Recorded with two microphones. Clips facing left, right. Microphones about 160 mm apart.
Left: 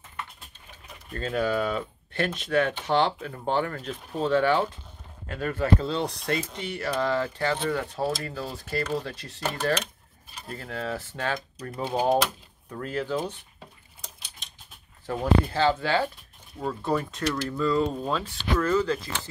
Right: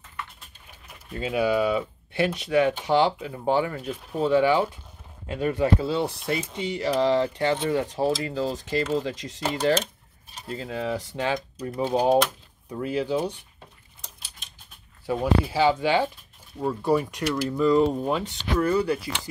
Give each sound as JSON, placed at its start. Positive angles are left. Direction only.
{"t": 1.1, "sound": "speech", "side_deg": -10}
{"t": 5.9, "sound": "speech", "side_deg": -5}
{"t": 15.0, "sound": "speech", "side_deg": -10}